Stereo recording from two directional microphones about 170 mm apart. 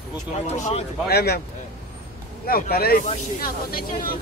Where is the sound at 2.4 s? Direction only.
60° left (ahead or behind).